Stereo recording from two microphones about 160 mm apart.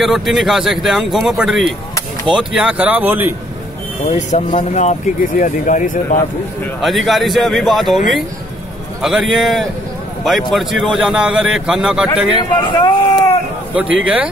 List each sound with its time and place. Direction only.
0.0 s speech: centre (ahead or behind)
4.1 s speech: 50° left (ahead or behind)
6.8 s speech: centre (ahead or behind)
9.0 s speech: centre (ahead or behind)
12.4 s speech: 30° left (ahead or behind)
13.7 s speech: 10° right (ahead or behind)